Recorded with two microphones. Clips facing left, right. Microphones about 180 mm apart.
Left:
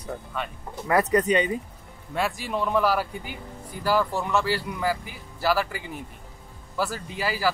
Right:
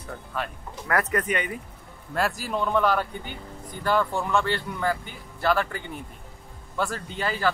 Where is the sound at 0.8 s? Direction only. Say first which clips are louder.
Left 4 dB; 20° left (ahead or behind).